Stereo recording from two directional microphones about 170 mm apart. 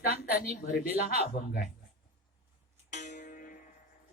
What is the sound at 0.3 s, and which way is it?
Speech, 60° left (ahead or behind).